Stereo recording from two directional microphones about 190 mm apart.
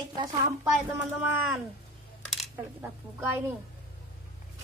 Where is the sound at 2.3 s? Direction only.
Centre (ahead or behind).